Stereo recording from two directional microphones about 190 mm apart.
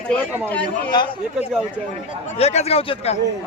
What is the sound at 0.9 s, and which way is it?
A man's voice, 25° left (ahead or behind).